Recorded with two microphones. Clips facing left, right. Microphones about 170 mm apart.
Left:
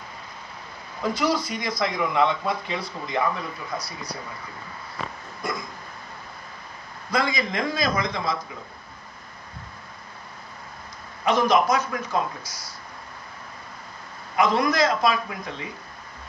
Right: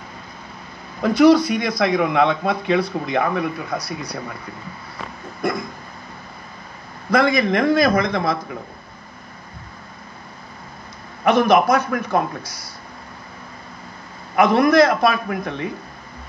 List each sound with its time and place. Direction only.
1.0 s speech: 65° right (ahead or behind)
5.4 s a man's voice: 60° right (ahead or behind)
7.1 s a man's voice: 60° right (ahead or behind)
11.2 s a man's voice: 60° right (ahead or behind)
14.3 s a man's voice: 60° right (ahead or behind)